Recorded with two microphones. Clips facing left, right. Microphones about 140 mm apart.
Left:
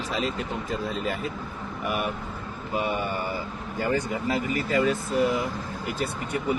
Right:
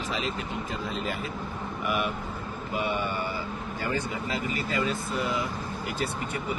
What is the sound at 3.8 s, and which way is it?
Speech, 50° left (ahead or behind).